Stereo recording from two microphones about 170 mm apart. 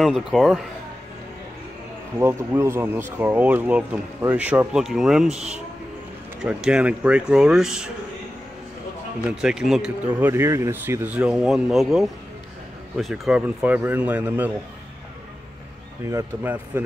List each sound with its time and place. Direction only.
0.0 s speech: centre (ahead or behind)
2.1 s speech: 15° right (ahead or behind)
9.4 s speech: 5° right (ahead or behind)
16.1 s speech: 15° right (ahead or behind)